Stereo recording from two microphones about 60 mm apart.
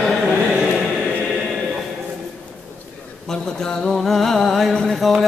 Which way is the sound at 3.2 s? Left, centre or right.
Centre.